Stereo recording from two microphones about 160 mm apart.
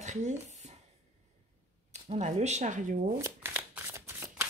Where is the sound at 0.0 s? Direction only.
50° right (ahead or behind).